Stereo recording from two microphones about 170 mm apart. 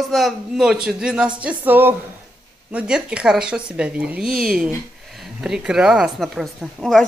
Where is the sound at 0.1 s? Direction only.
Centre (ahead or behind).